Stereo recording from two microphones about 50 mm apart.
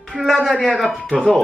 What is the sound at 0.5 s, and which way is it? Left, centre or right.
Speech, centre.